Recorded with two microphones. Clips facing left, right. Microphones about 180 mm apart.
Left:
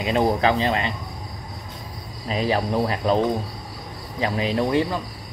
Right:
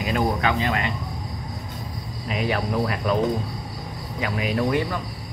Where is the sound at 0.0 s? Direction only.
30° left (ahead or behind).